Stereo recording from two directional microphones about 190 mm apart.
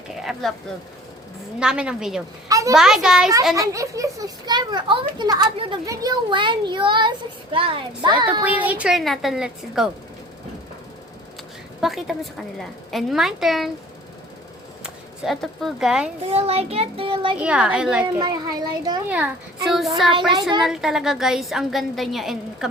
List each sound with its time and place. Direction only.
0.2 s speech: centre (ahead or behind)
1.5 s a woman's voice: 5° right (ahead or behind)
2.5 s a sound: 15° right (ahead or behind)
2.7 s a woman's voice: 5° right (ahead or behind)
3.5 s a child's voice: 15° right (ahead or behind)
8.5 s a woman's voice: 10° right (ahead or behind)
11.8 s a woman's voice: centre (ahead or behind)
14.8 s speech: centre (ahead or behind)
16.3 s a child's voice: 35° right (ahead or behind)
17.4 s a woman's voice: 5° right (ahead or behind)
18.2 s a child's voice: 20° right (ahead or behind)
19.0 s a woman's voice: 10° right (ahead or behind)